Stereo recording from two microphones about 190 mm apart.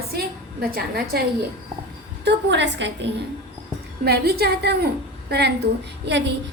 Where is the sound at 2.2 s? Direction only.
65° right (ahead or behind).